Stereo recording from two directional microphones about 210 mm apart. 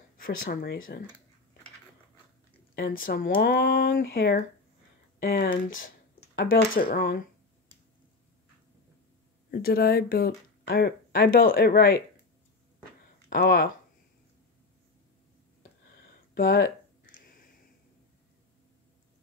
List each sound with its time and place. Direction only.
0.2 s speech: 45° left (ahead or behind)
2.7 s speech: 45° left (ahead or behind)
6.7 s speech: 45° left (ahead or behind)
9.5 s speech: 45° left (ahead or behind)
13.3 s speech: 45° left (ahead or behind)
16.3 s speech: 45° left (ahead or behind)